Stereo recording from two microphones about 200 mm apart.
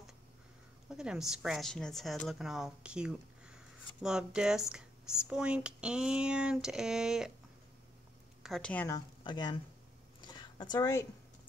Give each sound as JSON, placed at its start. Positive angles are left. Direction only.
{"t": 0.8, "sound": "a woman's voice", "side_deg": -5}
{"t": 8.4, "sound": "a woman's voice", "side_deg": 0}
{"t": 10.2, "sound": "a sound", "side_deg": 20}